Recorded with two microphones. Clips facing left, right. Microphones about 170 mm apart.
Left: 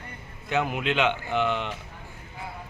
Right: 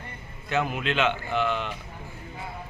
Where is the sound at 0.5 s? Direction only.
15° left (ahead or behind).